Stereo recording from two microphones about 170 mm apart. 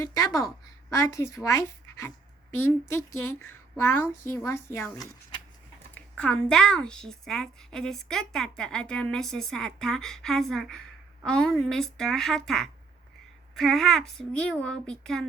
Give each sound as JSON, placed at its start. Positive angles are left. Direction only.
{"t": 0.0, "sound": "speech", "side_deg": 20}
{"t": 4.4, "sound": "speech", "side_deg": 15}
{"t": 5.9, "sound": "a woman's voice", "side_deg": 5}